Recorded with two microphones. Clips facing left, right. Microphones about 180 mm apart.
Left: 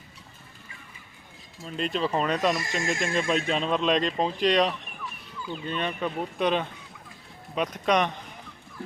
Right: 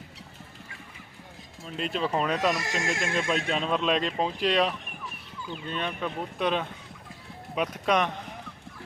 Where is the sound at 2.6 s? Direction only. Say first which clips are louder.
Left 1 dB; 80° right.